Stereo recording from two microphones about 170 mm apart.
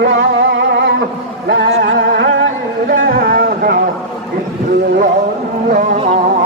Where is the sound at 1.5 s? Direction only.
90° right; by 3.8 s 60° right (ahead or behind).